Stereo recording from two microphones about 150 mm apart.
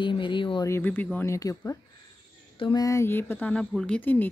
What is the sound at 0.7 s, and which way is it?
Speech, 15° left (ahead or behind).